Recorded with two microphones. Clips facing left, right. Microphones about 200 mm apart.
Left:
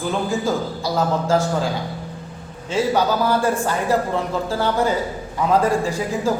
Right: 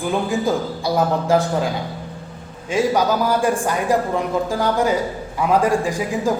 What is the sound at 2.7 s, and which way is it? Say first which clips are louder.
A man's voice: right 1 dB; 10° right (ahead or behind).